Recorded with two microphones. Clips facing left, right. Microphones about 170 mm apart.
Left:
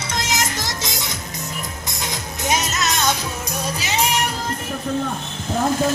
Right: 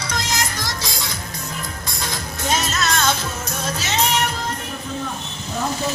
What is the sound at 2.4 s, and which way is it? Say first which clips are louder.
Music: even; 20° left (ahead or behind).